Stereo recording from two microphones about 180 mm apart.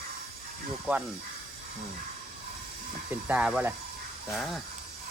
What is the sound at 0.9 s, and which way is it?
Speech, 5° right (ahead or behind).